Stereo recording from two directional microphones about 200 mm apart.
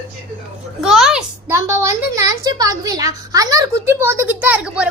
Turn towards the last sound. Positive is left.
turn(degrees=-5)  # may be behind; listen again after turning